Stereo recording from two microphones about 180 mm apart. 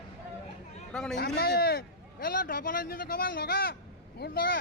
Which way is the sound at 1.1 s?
65° left (ahead or behind).